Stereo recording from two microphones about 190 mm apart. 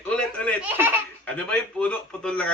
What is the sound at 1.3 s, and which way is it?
A man's voice, 5° left (ahead or behind).